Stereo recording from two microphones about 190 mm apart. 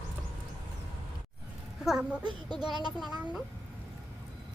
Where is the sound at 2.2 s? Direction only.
25° right (ahead or behind).